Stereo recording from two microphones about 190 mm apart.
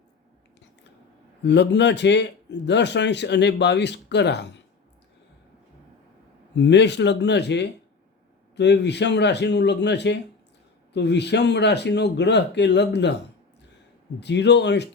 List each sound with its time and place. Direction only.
1.5 s a man's voice: 65° left (ahead or behind)
6.7 s a man's voice: 65° left (ahead or behind)
14.2 s a man's voice: 65° left (ahead or behind)